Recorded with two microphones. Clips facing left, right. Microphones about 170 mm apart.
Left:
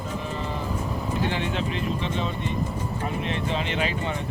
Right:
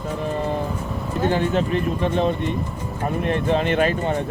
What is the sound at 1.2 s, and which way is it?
Speech, 45° right (ahead or behind).